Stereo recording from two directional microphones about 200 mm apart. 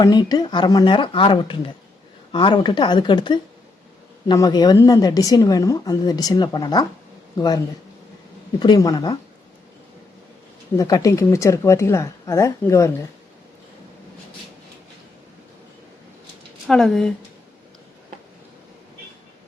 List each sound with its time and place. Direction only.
0.0 s speech: 20° left (ahead or behind)
10.8 s speech: 15° left (ahead or behind)
16.6 s speech: centre (ahead or behind)